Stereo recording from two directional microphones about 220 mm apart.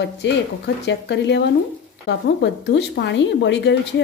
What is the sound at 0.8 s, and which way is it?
Speech, 50° left (ahead or behind).